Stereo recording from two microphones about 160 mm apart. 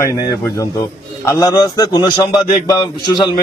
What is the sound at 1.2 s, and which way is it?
A man's voice, 20° left (ahead or behind).